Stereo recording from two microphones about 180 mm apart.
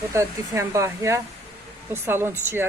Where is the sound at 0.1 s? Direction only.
15° right (ahead or behind).